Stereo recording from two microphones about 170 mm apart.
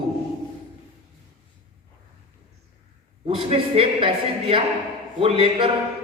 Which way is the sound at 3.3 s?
35° right (ahead or behind).